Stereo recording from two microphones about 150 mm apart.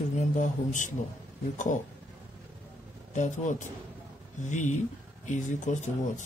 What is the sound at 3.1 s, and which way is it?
Speech, 55° left (ahead or behind).